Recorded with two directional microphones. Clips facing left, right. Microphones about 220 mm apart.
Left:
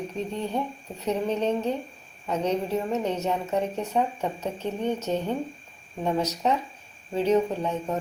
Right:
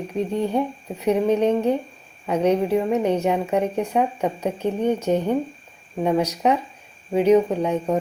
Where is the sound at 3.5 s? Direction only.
60° right (ahead or behind).